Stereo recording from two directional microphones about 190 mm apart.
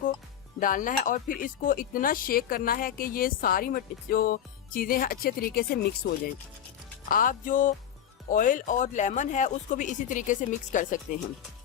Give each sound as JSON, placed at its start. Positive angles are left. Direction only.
{"t": 0.6, "sound": "speech", "side_deg": 45}
{"t": 7.1, "sound": "speech", "side_deg": 45}